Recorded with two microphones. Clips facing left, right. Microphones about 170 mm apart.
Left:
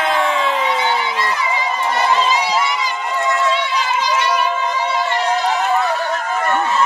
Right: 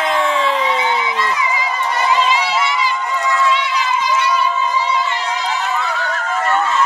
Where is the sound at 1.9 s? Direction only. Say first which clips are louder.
Right 1 dB; 40° left (ahead or behind).